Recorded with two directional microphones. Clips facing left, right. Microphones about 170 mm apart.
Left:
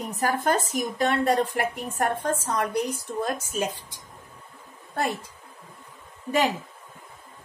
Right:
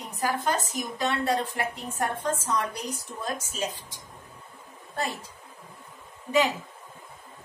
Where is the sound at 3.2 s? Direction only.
60° left (ahead or behind).